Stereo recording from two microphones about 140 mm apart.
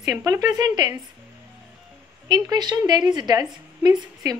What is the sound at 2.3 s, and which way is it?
A woman's voice, 30° right (ahead or behind).